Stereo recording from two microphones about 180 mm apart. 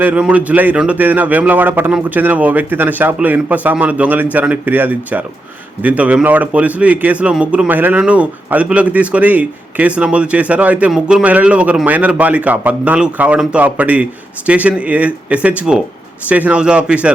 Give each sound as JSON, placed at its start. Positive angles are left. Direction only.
{"t": 0.0, "sound": "a man's voice", "side_deg": -10}